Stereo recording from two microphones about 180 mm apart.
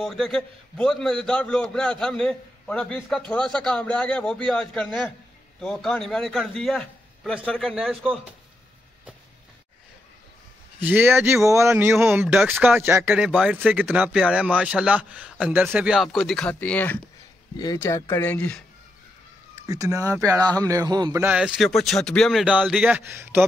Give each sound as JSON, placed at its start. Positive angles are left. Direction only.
{"t": 0.0, "sound": "a man's voice", "side_deg": 0}
{"t": 10.8, "sound": "speech", "side_deg": -10}
{"t": 19.7, "sound": "speech", "side_deg": -20}